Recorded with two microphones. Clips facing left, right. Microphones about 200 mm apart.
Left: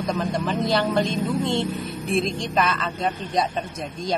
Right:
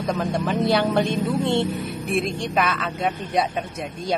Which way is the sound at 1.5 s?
65° right (ahead or behind).